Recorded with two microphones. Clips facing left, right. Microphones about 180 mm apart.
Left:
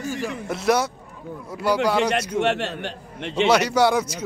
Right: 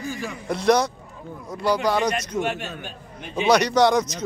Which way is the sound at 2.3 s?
75° left (ahead or behind).